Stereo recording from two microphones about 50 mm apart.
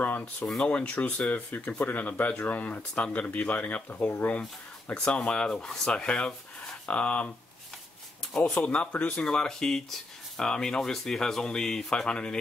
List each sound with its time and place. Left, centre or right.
0.7 s speech: left
5.0 s speech: left
8.3 s speech: centre
8.9 s speech: left
9.2 s speech: centre